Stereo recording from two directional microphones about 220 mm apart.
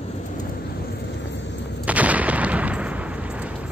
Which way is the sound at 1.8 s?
5° right (ahead or behind).